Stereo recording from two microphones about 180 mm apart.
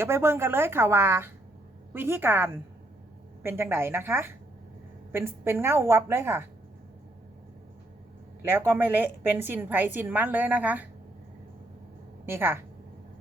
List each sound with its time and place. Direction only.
0.0 s a woman's voice: 15° right (ahead or behind)
8.4 s a woman's voice: 10° right (ahead or behind)
12.2 s a woman's voice: 10° right (ahead or behind)